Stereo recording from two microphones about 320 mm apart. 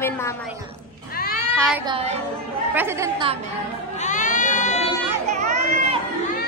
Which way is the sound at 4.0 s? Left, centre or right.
Left.